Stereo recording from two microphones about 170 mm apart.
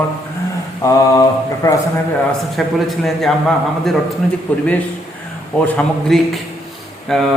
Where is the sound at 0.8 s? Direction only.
20° left (ahead or behind).